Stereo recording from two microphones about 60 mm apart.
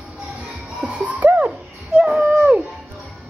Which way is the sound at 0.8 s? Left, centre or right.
Right.